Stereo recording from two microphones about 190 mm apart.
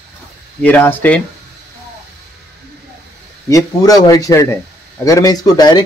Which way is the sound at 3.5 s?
20° left (ahead or behind).